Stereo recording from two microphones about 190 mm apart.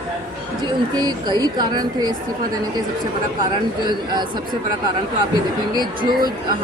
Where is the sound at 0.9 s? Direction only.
20° right (ahead or behind).